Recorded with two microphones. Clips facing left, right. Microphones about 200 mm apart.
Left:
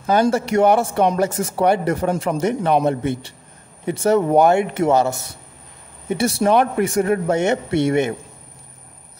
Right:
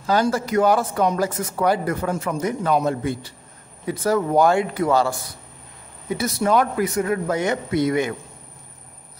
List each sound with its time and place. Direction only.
0.0 s speech: 20° left (ahead or behind)